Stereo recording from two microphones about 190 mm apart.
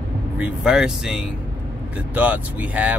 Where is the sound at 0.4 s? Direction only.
5° right (ahead or behind).